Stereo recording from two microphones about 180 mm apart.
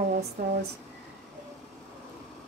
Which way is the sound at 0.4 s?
50° right (ahead or behind).